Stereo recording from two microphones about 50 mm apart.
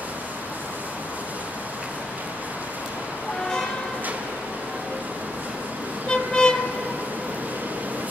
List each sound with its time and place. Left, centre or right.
6.0 s vehicle: centre